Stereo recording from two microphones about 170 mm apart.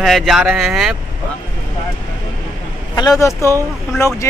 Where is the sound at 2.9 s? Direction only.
20° left (ahead or behind).